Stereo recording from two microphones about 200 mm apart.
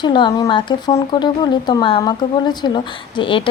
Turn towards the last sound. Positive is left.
turn(degrees=25)  # may be behind; listen again after turning